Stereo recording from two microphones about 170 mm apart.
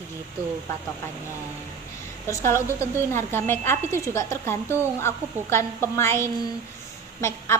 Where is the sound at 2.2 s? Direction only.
15° left (ahead or behind).